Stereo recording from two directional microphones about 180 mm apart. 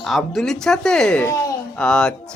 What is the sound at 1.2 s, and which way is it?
Speech, 15° left (ahead or behind).